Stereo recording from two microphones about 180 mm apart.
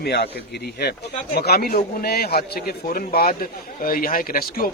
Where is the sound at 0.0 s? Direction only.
65° left (ahead or behind).